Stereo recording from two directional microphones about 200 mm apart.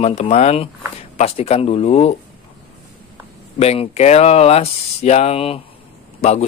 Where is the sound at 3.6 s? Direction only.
30° left (ahead or behind).